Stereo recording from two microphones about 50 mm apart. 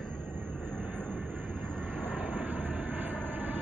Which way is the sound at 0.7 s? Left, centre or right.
Right.